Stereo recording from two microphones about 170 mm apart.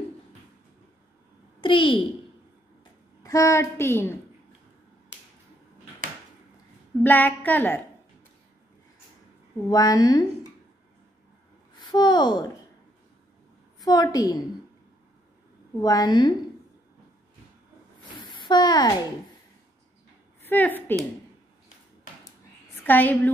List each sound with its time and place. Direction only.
1.6 s a child's voice: 30° left (ahead or behind)
2.8 s a woman's voice: 20° left (ahead or behind)
7.0 s a woman's voice: 10° left (ahead or behind)
9.7 s a woman's voice: 20° left (ahead or behind)
11.8 s speech: 25° left (ahead or behind)
13.8 s a woman's voice: 25° left (ahead or behind)
15.8 s a woman's voice: 20° left (ahead or behind)
18.2 s a sound: 25° left (ahead or behind)
20.4 s a woman's voice: 10° left (ahead or behind)
22.8 s a woman's voice: 10° left (ahead or behind)